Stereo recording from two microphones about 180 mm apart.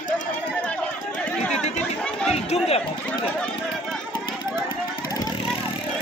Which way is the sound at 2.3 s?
35° left (ahead or behind).